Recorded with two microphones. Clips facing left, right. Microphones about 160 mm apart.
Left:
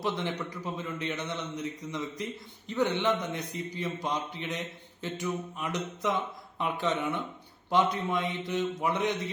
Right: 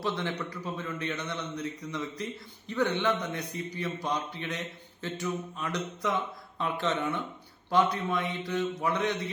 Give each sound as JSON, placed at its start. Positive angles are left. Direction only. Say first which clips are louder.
{"t": 0.0, "sound": "a man's voice", "louder": "even", "side_deg": 15}